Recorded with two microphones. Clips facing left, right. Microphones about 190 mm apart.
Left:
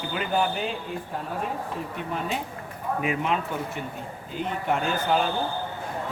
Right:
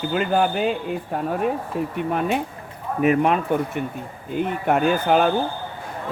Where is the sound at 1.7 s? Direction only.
60° right (ahead or behind).